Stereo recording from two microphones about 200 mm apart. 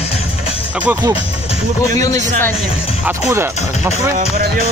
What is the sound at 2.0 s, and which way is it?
Speech, 15° left (ahead or behind).